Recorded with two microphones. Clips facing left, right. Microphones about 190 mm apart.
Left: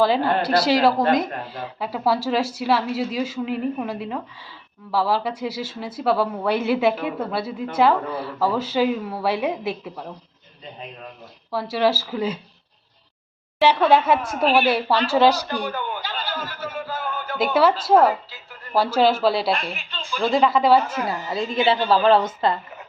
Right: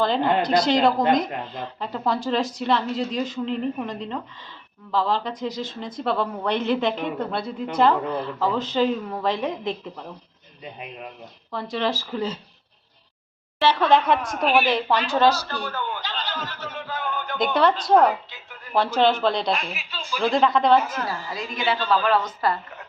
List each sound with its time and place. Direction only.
0.4 s speech: 5° left (ahead or behind)
11.5 s speech: 5° left (ahead or behind)
13.6 s a man's voice: 10° left (ahead or behind)
20.9 s a woman's voice: 15° left (ahead or behind)